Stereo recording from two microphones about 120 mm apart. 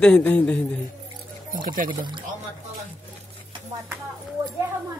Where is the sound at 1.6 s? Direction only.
40° right (ahead or behind).